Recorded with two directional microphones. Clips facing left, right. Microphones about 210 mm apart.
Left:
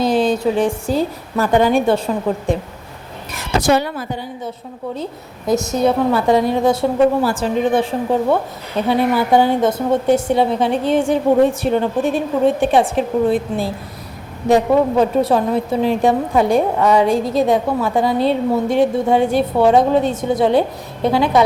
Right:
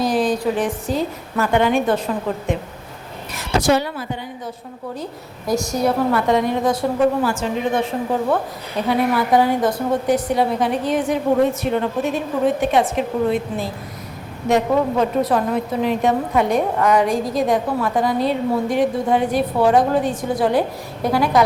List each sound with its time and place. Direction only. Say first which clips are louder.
0.0 s a woman's voice: left 3 dB; 25° left (ahead or behind)
3.7 s a woman's voice: left 2 dB; 55° left (ahead or behind)
5.5 s a woman's voice: left 3 dB; 25° left (ahead or behind)